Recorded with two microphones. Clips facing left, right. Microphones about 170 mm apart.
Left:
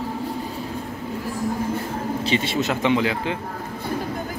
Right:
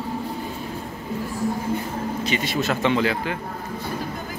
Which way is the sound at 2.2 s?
30° left (ahead or behind).